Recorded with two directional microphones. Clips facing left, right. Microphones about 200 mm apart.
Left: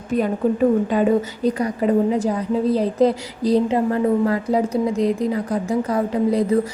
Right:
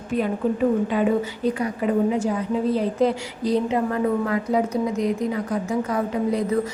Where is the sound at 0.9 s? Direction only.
40° left (ahead or behind).